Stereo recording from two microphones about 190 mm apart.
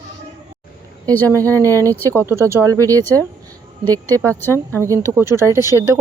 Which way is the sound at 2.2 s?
15° right (ahead or behind).